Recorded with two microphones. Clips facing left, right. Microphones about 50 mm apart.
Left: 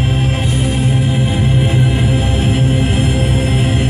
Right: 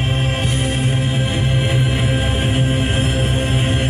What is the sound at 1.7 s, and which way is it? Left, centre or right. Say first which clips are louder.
Music: left 4 dB; centre.